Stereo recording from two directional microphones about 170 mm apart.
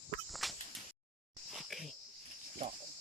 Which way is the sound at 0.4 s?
Centre (ahead or behind).